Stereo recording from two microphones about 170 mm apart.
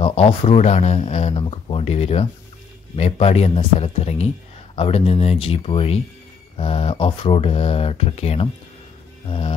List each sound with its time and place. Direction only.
0.0 s speech: 35° left (ahead or behind)